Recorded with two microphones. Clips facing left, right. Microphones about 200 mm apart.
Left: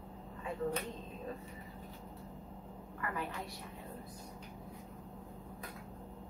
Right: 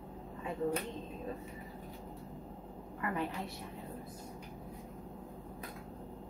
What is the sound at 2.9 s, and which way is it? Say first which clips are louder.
Speech: right 4 dB; 25° right (ahead or behind).